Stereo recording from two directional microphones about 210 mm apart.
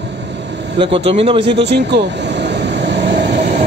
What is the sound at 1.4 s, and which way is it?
Vehicle, 55° right (ahead or behind).